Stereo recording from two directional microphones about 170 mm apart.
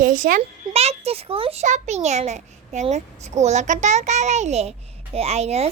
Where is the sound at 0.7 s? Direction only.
35° right (ahead or behind).